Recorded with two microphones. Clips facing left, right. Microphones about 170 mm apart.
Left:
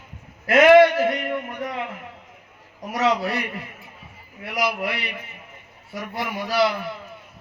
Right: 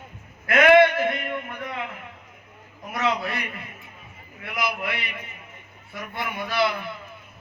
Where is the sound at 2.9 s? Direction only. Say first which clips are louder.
Left 4 dB; 35° left (ahead or behind).